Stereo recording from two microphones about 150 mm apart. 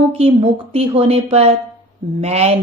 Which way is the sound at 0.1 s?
40° right (ahead or behind).